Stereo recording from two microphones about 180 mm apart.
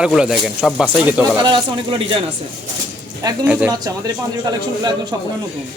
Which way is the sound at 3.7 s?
20° right (ahead or behind).